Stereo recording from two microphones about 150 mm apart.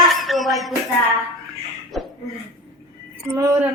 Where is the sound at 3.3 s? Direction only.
15° right (ahead or behind).